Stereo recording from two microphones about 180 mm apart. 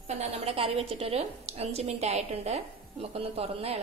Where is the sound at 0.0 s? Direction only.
35° right (ahead or behind).